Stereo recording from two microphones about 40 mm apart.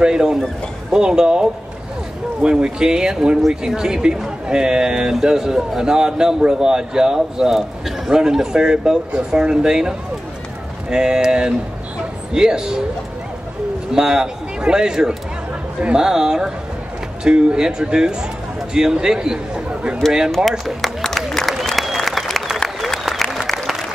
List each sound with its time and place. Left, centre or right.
0.0 s speech: centre
13.9 s a man's voice: centre
20.3 s speech: centre
21.7 s applause: centre